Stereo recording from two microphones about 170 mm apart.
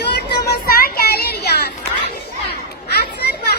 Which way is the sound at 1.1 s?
70° left (ahead or behind).